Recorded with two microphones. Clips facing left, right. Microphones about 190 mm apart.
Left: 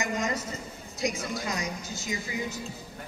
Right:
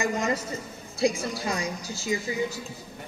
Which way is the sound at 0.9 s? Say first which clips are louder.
Right 5 dB; 30° right (ahead or behind).